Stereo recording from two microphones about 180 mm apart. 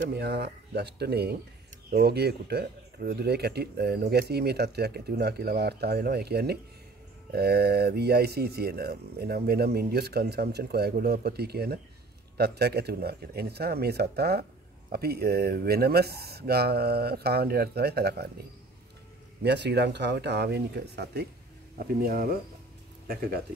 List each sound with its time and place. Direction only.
0.0 s speech: 65° right (ahead or behind)
19.4 s speech: 70° right (ahead or behind); by 23.4 s 55° right (ahead or behind)